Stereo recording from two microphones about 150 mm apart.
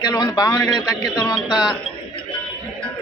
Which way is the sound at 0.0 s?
25° left (ahead or behind).